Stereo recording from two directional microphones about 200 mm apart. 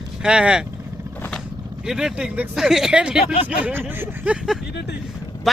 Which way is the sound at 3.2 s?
30° left (ahead or behind).